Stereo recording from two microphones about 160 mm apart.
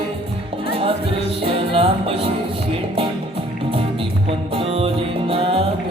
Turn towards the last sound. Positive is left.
turn(degrees=-35)  # may be behind; listen again after turning